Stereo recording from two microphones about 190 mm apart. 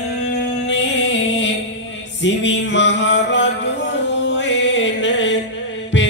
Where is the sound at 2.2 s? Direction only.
70° left (ahead or behind).